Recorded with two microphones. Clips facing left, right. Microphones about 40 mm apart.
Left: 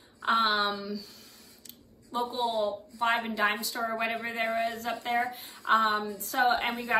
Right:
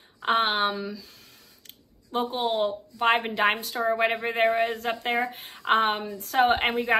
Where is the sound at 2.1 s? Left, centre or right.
Right.